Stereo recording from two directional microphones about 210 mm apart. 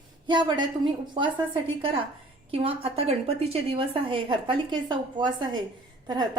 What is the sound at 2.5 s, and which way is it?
A woman's voice, 25° right (ahead or behind).